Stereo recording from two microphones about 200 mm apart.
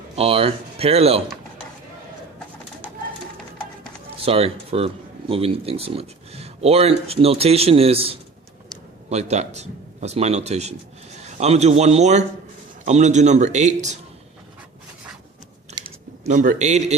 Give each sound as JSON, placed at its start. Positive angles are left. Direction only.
{"t": 0.2, "sound": "speech", "side_deg": -30}
{"t": 4.2, "sound": "a man's voice", "side_deg": -30}
{"t": 15.8, "sound": "a sound", "side_deg": -40}